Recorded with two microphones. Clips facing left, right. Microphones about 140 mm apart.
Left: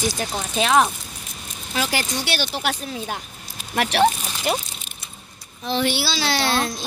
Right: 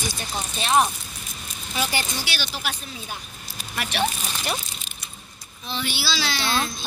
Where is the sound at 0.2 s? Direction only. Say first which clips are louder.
Left 7 dB; 90° left.